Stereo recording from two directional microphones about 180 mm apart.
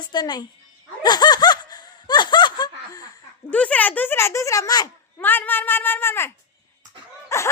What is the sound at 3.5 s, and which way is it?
A child's voice, 10° left (ahead or behind).